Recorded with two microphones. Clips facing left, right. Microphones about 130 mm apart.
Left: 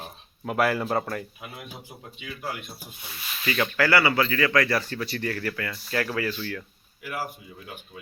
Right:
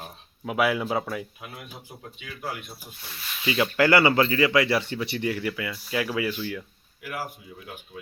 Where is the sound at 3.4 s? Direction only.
15° right (ahead or behind).